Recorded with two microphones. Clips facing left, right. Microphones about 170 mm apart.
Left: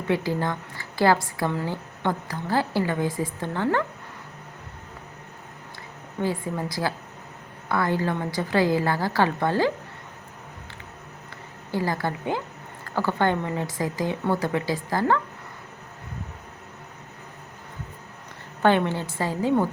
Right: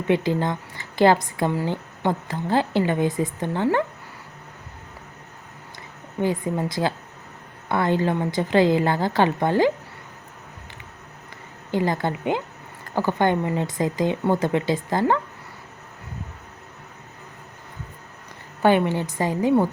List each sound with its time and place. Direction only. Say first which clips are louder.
0.1 s a woman's voice: right 3 dB; 20° right (ahead or behind)
6.2 s a woman's voice: right 4 dB; 20° right (ahead or behind)
11.7 s a woman's voice: right 3 dB; 20° right (ahead or behind)
18.6 s a woman's voice: right 2 dB; 10° right (ahead or behind)